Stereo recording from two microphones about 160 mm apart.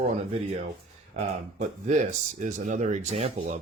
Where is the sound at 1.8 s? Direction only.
50° right (ahead or behind).